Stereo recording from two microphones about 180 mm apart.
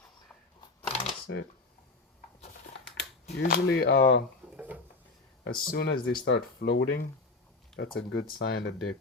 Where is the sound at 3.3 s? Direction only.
65° left (ahead or behind).